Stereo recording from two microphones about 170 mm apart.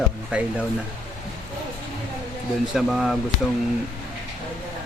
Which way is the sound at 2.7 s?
Centre (ahead or behind).